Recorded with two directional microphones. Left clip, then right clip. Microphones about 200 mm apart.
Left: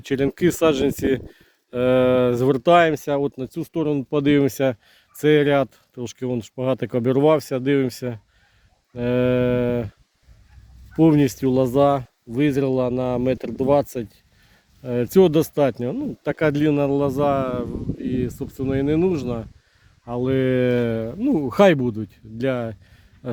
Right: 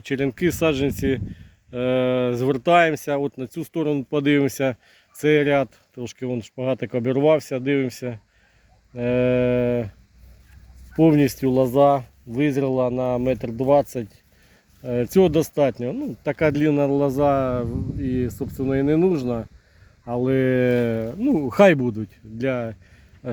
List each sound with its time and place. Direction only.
0.0 s speech: 30° left (ahead or behind); by 9.9 s 15° left (ahead or behind)
10.9 s speech: 15° left (ahead or behind)